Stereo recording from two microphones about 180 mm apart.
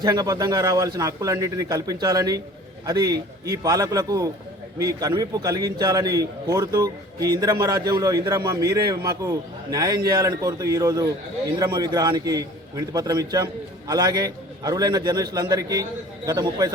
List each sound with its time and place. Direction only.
0.0 s a man's voice: 20° right (ahead or behind)